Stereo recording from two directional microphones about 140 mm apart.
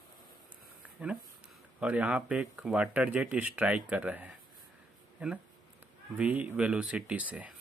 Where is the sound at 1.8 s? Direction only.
10° right (ahead or behind).